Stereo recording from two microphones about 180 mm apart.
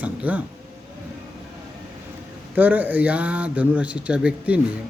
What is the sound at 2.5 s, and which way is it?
Speech, 10° right (ahead or behind).